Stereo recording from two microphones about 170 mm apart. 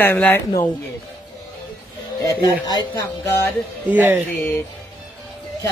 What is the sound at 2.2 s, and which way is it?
Speech, 20° left (ahead or behind).